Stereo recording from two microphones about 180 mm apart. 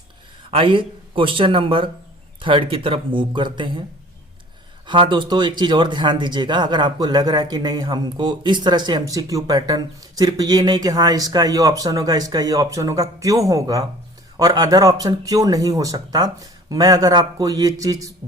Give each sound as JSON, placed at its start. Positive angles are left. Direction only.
{"t": 0.5, "sound": "speech", "side_deg": -30}
{"t": 4.9, "sound": "speech", "side_deg": -25}